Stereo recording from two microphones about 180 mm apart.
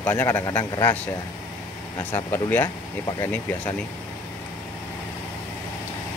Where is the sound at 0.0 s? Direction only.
10° left (ahead or behind).